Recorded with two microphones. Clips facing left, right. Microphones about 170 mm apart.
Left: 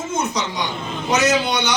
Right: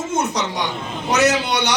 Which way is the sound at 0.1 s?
70° right (ahead or behind).